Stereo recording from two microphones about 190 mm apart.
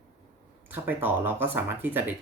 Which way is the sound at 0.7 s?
10° right (ahead or behind).